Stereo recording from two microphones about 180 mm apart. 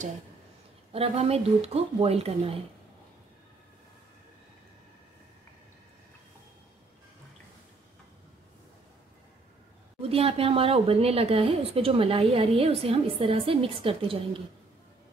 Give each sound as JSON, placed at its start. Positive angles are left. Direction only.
{"t": 0.9, "sound": "speech", "side_deg": -35}
{"t": 10.0, "sound": "speech", "side_deg": -35}